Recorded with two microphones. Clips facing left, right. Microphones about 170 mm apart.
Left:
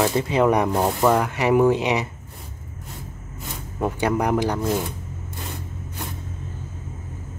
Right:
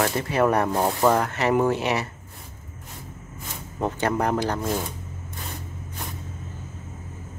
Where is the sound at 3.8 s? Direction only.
10° left (ahead or behind).